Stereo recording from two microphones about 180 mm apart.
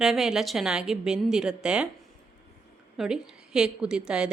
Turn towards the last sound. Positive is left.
turn(degrees=-5)  # may be behind; listen again after turning